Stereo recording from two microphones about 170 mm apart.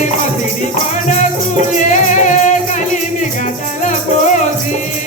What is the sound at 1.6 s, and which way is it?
Music, 45° left (ahead or behind).